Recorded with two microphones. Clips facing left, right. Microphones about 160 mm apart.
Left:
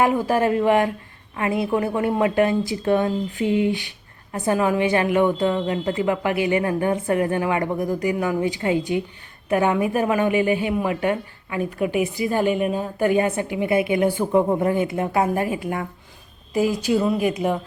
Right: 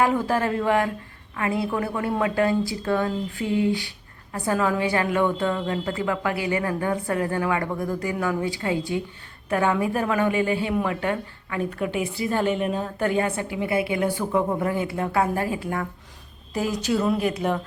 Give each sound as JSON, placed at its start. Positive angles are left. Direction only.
{"t": 0.0, "sound": "a woman's voice", "side_deg": 15}